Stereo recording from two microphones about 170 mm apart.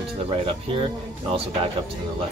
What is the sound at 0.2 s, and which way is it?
Speech, 35° right (ahead or behind).